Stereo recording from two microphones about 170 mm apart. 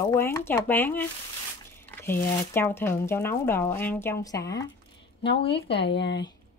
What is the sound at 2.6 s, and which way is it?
Speech, 15° left (ahead or behind).